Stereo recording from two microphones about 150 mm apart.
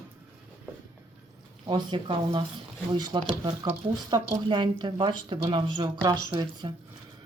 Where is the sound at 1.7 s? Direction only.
35° right (ahead or behind).